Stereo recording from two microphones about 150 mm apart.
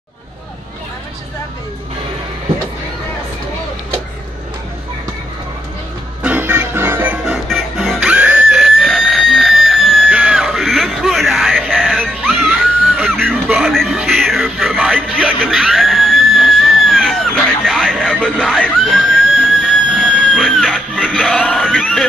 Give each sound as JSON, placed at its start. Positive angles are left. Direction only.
{"t": 6.2, "sound": "music", "side_deg": -10}